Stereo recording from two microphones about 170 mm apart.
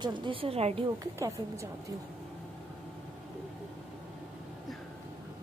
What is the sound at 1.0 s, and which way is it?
Speech, 15° right (ahead or behind).